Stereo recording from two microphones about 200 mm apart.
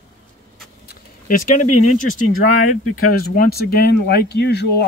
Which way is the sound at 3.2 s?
50° left (ahead or behind).